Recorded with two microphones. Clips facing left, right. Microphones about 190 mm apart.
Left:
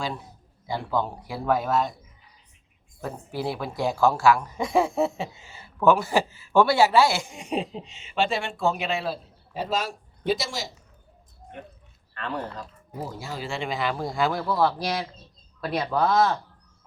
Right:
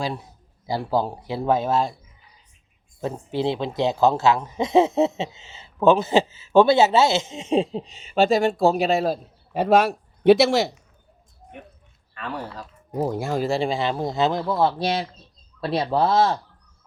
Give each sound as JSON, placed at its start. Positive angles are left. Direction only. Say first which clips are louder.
{"t": 0.7, "sound": "speech", "louder": "right 4 dB", "side_deg": -35}
{"t": 3.0, "sound": "speech", "louder": "right 6 dB", "side_deg": -25}
{"t": 9.5, "sound": "a man's voice", "louder": "right 10 dB", "side_deg": -60}
{"t": 12.1, "sound": "speech", "louder": "even", "side_deg": -10}
{"t": 13.0, "sound": "speech", "louder": "right 10 dB", "side_deg": -55}